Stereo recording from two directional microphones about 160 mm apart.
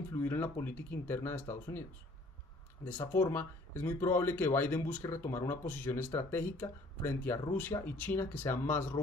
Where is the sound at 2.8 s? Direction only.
15° left (ahead or behind).